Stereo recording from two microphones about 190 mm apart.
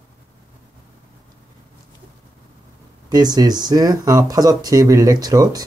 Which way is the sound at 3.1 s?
20° right (ahead or behind).